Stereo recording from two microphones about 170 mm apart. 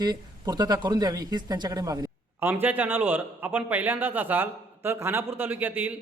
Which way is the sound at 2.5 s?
10° right (ahead or behind).